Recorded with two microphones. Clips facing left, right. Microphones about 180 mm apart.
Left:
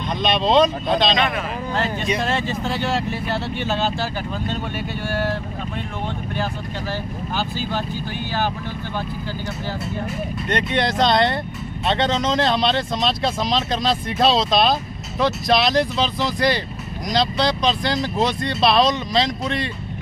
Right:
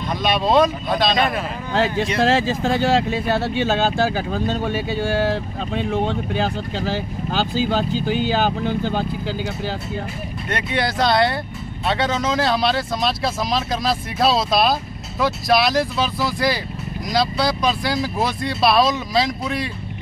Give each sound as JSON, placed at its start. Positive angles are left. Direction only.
{"t": 0.2, "sound": "speech", "side_deg": -10}
{"t": 1.7, "sound": "speech", "side_deg": -80}
{"t": 10.5, "sound": "speech", "side_deg": -5}